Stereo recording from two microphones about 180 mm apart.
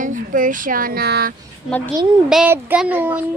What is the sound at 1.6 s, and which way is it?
Speech, 10° left (ahead or behind).